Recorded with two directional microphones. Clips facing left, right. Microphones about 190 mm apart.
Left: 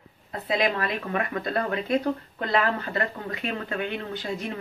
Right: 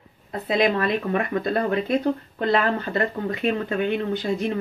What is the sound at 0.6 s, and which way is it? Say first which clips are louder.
Speech: right 6 dB; 25° right (ahead or behind).